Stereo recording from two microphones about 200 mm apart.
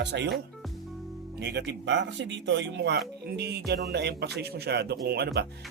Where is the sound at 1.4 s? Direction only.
60° right (ahead or behind).